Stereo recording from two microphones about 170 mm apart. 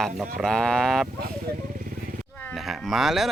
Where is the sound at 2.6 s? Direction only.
Centre (ahead or behind).